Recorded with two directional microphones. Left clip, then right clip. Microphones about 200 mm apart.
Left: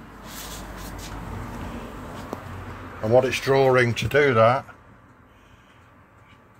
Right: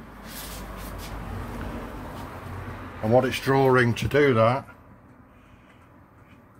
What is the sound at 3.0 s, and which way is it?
Speech, 10° right (ahead or behind).